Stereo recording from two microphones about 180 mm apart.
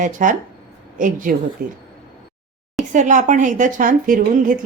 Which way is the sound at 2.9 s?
45° right (ahead or behind).